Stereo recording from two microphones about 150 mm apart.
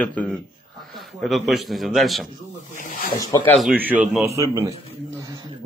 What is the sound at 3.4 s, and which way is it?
Speech, 5° left (ahead or behind).